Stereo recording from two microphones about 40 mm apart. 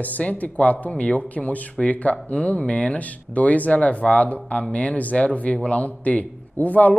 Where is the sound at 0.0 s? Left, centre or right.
Left.